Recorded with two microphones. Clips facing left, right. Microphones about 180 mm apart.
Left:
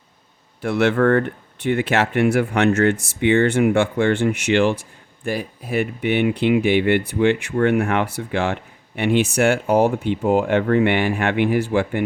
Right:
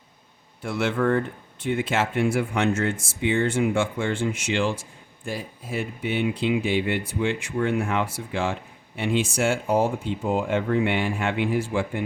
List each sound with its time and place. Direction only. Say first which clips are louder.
0.6 s speech: left 7 dB; 65° left (ahead or behind)